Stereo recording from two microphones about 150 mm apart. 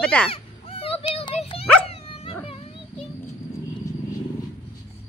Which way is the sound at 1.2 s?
40° left (ahead or behind).